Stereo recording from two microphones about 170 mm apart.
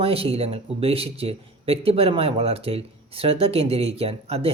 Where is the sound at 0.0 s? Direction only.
35° right (ahead or behind).